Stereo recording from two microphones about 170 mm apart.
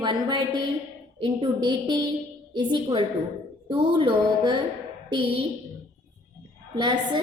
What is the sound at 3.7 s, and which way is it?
Music, 30° right (ahead or behind).